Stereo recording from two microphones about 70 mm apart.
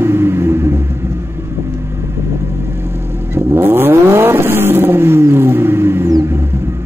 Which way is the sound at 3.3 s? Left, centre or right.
Right.